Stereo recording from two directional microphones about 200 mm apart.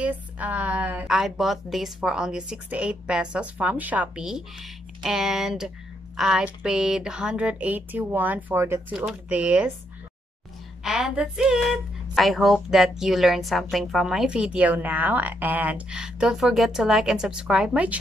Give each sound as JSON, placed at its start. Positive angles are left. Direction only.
{"t": 0.0, "sound": "speech", "side_deg": -10}
{"t": 10.8, "sound": "speech", "side_deg": -5}